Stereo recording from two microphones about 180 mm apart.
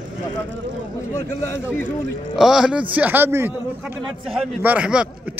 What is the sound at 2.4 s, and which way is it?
A man's voice, 5° right (ahead or behind).